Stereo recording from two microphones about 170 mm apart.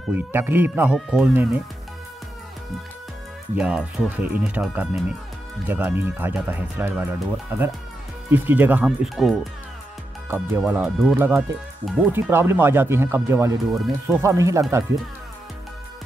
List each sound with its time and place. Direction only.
0.1 s speech: 10° right (ahead or behind)
3.5 s speech: 5° right (ahead or behind)
10.2 s speech: 15° right (ahead or behind)